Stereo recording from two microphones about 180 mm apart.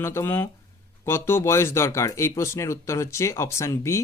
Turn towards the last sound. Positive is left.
turn(degrees=15)  # may be behind; listen again after turning